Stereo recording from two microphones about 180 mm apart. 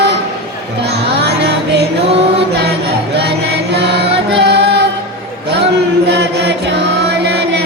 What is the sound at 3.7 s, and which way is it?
Choir, 70° right (ahead or behind).